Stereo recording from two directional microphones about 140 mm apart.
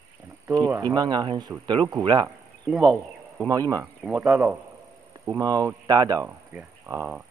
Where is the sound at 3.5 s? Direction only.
25° right (ahead or behind).